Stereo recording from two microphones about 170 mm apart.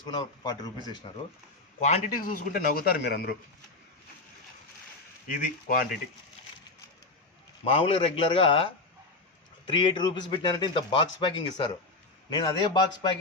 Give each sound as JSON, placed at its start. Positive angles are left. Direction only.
{"t": 0.0, "sound": "speech", "side_deg": 25}
{"t": 1.8, "sound": "a man's voice", "side_deg": 50}
{"t": 5.4, "sound": "a man's voice", "side_deg": 55}
{"t": 7.6, "sound": "a man's voice", "side_deg": 35}